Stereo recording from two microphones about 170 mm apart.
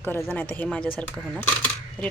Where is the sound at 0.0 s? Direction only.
10° left (ahead or behind).